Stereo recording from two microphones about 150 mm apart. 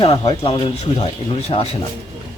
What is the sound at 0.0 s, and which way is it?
Speech, 40° left (ahead or behind).